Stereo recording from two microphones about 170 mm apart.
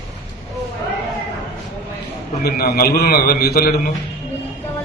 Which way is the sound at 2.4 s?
65° left (ahead or behind).